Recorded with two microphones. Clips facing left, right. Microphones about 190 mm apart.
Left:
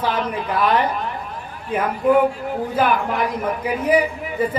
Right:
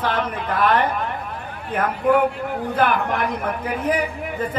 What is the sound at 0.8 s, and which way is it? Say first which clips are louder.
Speech: even; 55° right (ahead or behind).